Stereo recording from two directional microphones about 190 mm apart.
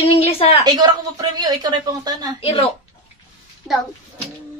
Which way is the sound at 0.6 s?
20° right (ahead or behind).